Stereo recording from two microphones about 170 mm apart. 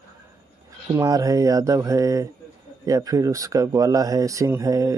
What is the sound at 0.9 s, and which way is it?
Speech, 20° right (ahead or behind).